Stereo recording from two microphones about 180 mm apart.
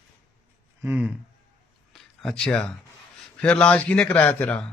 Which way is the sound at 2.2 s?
5° left (ahead or behind).